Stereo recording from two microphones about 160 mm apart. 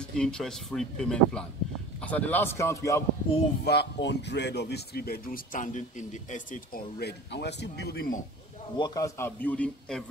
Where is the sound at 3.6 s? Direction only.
90° left; by 8.2 s 75° left (ahead or behind).